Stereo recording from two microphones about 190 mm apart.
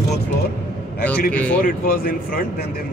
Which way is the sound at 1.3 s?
10° left (ahead or behind).